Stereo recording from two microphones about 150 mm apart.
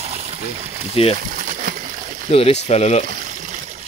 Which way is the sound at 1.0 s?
40° left (ahead or behind).